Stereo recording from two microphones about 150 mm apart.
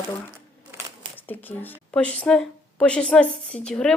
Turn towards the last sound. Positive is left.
turn(degrees=5)  # may be behind; listen again after turning